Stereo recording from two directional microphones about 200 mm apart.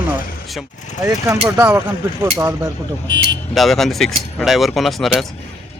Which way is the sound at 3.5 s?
Centre (ahead or behind).